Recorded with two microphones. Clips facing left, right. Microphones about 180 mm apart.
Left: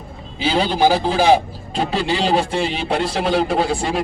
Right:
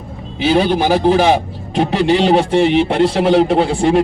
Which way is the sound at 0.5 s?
65° right (ahead or behind).